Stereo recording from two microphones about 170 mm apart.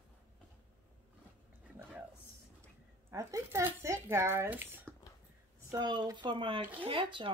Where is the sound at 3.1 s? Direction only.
15° right (ahead or behind).